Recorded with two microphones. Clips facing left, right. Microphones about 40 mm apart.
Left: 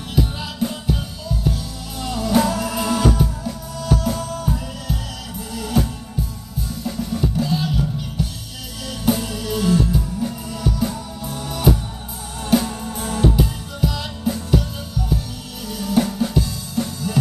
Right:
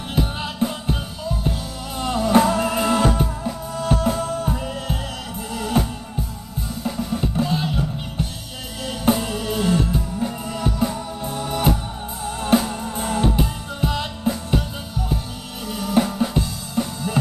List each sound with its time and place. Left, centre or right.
0.1 s music: right
15.6 s drum: right